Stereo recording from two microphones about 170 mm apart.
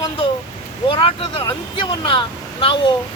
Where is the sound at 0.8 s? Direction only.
30° left (ahead or behind).